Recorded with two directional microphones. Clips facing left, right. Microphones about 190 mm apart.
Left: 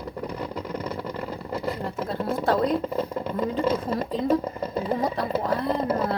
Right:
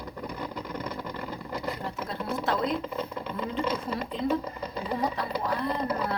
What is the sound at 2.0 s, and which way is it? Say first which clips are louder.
Speech: left 5 dB; 35° left (ahead or behind).